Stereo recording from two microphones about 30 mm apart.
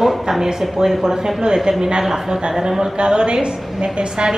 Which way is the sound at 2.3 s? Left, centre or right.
Right.